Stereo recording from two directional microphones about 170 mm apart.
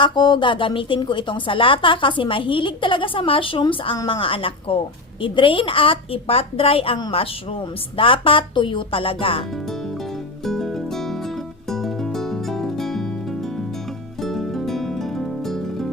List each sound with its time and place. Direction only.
0.0 s a woman's voice: 25° left (ahead or behind)
10.4 s music: centre (ahead or behind)
14.2 s music: centre (ahead or behind)